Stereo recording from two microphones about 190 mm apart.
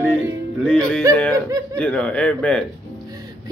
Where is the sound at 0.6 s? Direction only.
5° left (ahead or behind).